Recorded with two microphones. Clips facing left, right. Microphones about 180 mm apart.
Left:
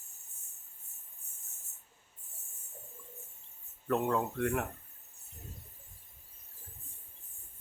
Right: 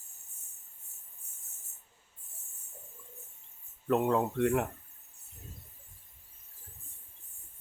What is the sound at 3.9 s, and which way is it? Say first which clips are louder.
Speech: right 3 dB; 20° right (ahead or behind).